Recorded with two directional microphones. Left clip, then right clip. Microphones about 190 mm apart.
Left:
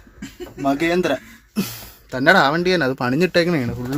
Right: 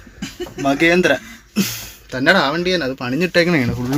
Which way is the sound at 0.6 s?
5° left (ahead or behind).